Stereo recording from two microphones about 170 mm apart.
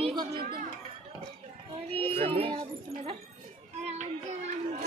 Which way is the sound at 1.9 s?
35° right (ahead or behind).